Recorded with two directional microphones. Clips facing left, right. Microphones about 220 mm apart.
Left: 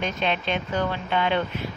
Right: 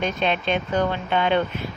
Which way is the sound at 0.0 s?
50° right (ahead or behind).